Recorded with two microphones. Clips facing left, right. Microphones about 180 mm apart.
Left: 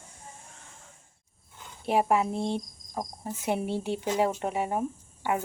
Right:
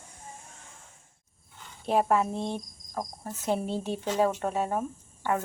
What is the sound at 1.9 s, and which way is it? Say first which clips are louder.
Speech: even; 15° left (ahead or behind).